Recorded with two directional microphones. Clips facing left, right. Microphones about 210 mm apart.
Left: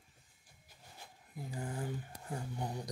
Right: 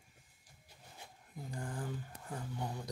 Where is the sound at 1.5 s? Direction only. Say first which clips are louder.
Left 2 dB; 10° left (ahead or behind).